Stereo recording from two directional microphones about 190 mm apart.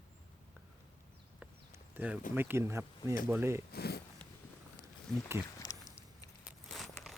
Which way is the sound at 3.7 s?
55° left (ahead or behind).